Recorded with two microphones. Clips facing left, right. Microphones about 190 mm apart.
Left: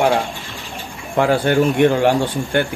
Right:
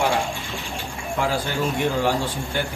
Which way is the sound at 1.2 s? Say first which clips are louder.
Left 9 dB; 65° left (ahead or behind).